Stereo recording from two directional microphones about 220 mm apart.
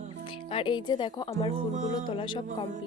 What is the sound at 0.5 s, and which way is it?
Speech, 20° left (ahead or behind).